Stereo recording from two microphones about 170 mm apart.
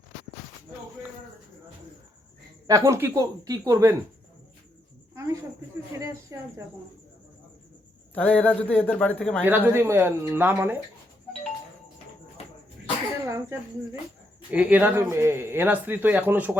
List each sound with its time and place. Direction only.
2.6 s speech: 20° right (ahead or behind)
5.1 s cricket: 15° right (ahead or behind)
5.9 s speech: 15° right (ahead or behind)
8.1 s a man's voice: 10° left (ahead or behind)
9.4 s speech: 10° right (ahead or behind)
13.2 s speech: 15° right (ahead or behind)